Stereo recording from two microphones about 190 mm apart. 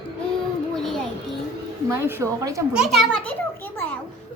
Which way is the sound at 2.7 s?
5° right (ahead or behind).